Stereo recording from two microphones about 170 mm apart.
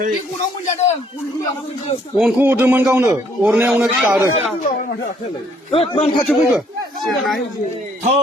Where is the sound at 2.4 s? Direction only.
10° right (ahead or behind).